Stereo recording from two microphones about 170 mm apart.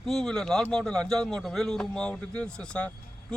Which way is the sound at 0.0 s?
5° left (ahead or behind).